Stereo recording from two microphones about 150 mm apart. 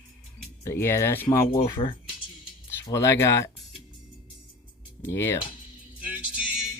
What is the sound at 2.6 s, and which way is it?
Speech, 20° left (ahead or behind).